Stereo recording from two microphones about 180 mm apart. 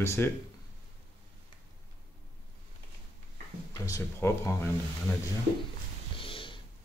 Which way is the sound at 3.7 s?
20° left (ahead or behind).